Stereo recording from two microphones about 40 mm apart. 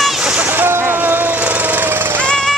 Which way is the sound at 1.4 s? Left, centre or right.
Right.